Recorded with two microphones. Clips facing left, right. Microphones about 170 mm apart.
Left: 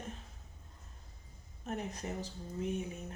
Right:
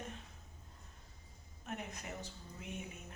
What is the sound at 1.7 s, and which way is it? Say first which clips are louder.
Speech: left 6 dB; 35° left (ahead or behind).